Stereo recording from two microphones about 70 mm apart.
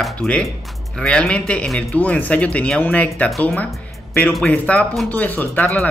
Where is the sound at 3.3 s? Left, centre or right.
Centre.